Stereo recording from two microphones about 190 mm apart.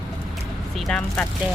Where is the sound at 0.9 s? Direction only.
5° left (ahead or behind).